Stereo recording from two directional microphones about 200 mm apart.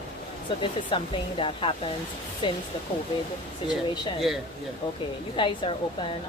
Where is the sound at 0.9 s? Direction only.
25° left (ahead or behind).